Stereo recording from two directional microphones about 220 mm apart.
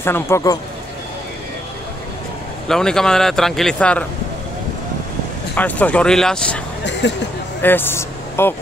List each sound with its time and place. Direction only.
0.0 s speech: 10° left (ahead or behind)
2.7 s speech: centre (ahead or behind)
5.5 s speech: 5° left (ahead or behind)
6.8 s a sound: 55° left (ahead or behind)
7.6 s speech: 10° left (ahead or behind)